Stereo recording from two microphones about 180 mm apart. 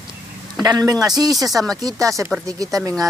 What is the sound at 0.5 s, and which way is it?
Speech, 20° right (ahead or behind).